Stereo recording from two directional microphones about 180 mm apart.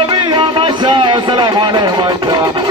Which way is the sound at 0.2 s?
25° right (ahead or behind).